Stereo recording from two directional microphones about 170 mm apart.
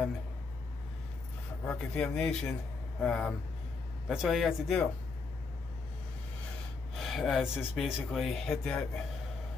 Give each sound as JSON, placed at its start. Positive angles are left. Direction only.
{"t": 1.7, "sound": "speech", "side_deg": 5}
{"t": 7.0, "sound": "speech", "side_deg": 0}